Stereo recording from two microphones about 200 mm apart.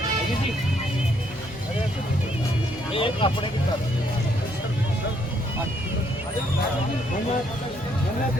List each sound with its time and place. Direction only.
2.9 s speech: 25° left (ahead or behind)